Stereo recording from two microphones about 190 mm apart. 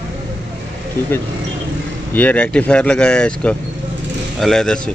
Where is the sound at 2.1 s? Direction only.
10° left (ahead or behind).